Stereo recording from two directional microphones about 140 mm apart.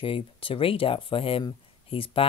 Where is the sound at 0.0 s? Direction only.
40° left (ahead or behind).